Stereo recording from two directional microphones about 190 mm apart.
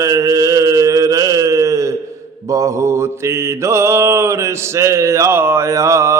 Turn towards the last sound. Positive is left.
turn(degrees=-15)  # may be behind; listen again after turning